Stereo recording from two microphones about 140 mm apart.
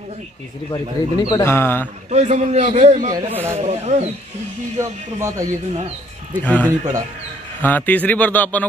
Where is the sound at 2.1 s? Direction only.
55° right (ahead or behind).